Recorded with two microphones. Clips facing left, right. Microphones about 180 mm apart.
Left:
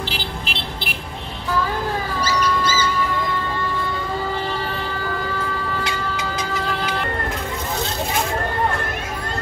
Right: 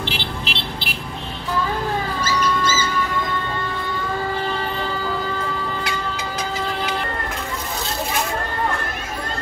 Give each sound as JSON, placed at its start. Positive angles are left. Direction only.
{"t": 0.0, "sound": "vehicle", "side_deg": 45}